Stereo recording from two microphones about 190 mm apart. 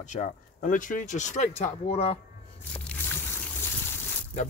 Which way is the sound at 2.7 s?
10° left (ahead or behind).